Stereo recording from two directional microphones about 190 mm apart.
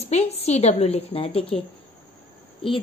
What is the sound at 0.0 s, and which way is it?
A woman's voice, 35° left (ahead or behind).